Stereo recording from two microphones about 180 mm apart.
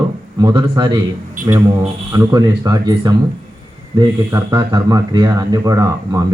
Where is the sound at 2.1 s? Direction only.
20° right (ahead or behind).